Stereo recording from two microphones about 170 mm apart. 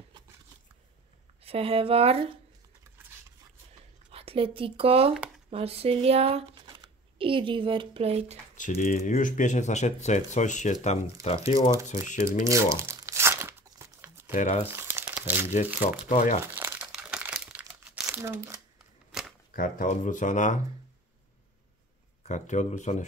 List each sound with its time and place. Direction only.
1.4 s speech: 35° right (ahead or behind)
4.1 s speech: 35° right (ahead or behind)
8.5 s speech: 50° left (ahead or behind)
11.9 s speech: 45° left (ahead or behind)
12.4 s crumpling: 20° right (ahead or behind)
14.3 s speech: 45° left (ahead or behind)
14.7 s crumpling: 15° right (ahead or behind)
15.8 s speech: 50° left (ahead or behind)
16.5 s crumpling: 10° right (ahead or behind)
18.2 s speech: 15° right (ahead or behind)
19.1 s camera: 5° right (ahead or behind)
19.5 s speech: 55° left (ahead or behind)
22.2 s speech: 45° left (ahead or behind)